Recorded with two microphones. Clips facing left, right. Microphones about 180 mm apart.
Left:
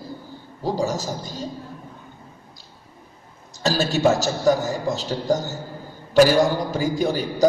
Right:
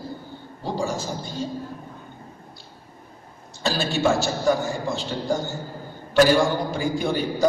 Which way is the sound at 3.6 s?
40° left (ahead or behind).